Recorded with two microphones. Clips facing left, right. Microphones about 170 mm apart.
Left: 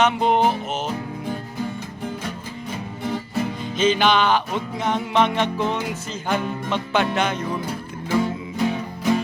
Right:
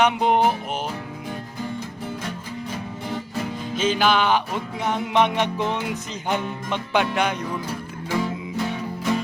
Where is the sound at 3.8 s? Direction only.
5° right (ahead or behind).